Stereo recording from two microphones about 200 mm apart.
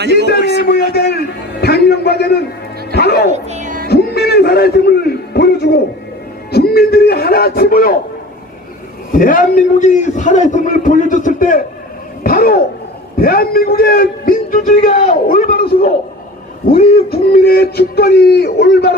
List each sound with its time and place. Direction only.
0.1 s a man's voice: 50° left (ahead or behind)
0.7 s a sound: 50° left (ahead or behind)
2.9 s a man's voice: 55° left (ahead or behind)
3.4 s music: 35° right (ahead or behind)
3.8 s music: 55° left (ahead or behind)
6.5 s a man's voice: 50° left (ahead or behind)
9.1 s a man's voice: 40° left (ahead or behind)
12.2 s a sound: 45° left (ahead or behind)
13.2 s a man's voice: 50° left (ahead or behind)